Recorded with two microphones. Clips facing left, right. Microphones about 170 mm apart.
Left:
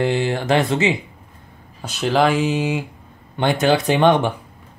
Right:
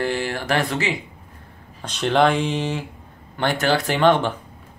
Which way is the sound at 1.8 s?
5° left (ahead or behind).